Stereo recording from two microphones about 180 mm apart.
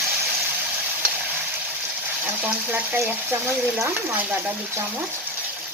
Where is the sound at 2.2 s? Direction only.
10° right (ahead or behind).